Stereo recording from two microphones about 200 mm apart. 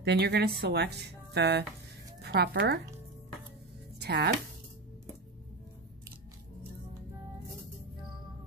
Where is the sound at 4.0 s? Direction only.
55° right (ahead or behind).